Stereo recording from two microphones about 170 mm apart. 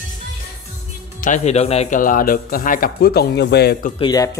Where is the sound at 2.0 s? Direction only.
55° left (ahead or behind); by 3.9 s 70° left (ahead or behind).